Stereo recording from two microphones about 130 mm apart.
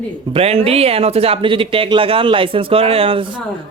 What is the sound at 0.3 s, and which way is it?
A man's voice, 50° right (ahead or behind).